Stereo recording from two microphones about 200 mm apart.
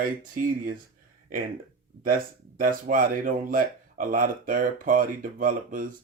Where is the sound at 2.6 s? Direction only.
45° right (ahead or behind).